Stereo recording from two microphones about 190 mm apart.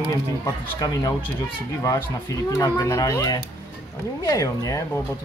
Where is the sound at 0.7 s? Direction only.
20° left (ahead or behind).